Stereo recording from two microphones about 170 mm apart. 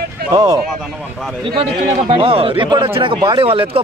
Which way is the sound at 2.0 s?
35° right (ahead or behind).